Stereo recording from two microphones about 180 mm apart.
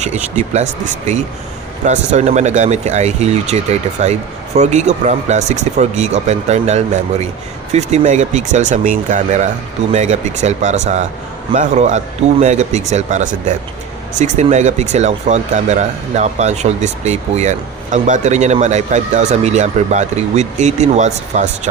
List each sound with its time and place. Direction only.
0.0 s speech: 40° right (ahead or behind)